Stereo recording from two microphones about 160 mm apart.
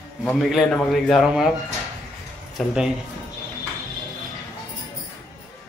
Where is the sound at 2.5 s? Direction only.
5° right (ahead or behind).